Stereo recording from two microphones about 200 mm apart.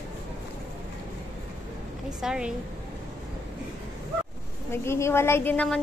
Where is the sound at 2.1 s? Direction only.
5° right (ahead or behind).